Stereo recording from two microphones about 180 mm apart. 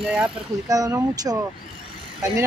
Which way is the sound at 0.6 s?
20° right (ahead or behind).